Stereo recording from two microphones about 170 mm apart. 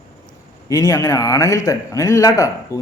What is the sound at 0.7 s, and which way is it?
Speech, 20° left (ahead or behind).